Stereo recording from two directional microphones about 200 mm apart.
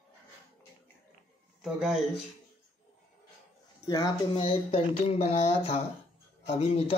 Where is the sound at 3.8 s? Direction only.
20° left (ahead or behind).